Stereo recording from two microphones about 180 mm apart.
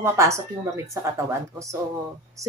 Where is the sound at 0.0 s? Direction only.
15° right (ahead or behind).